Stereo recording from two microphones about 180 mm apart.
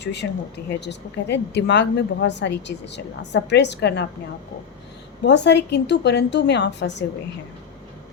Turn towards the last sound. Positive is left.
turn(degrees=75)  # may be behind; listen again after turning